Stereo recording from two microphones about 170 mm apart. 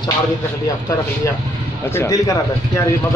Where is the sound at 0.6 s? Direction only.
20° left (ahead or behind).